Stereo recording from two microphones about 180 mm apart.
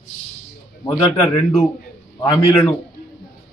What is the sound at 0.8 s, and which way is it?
A man's voice, 20° left (ahead or behind).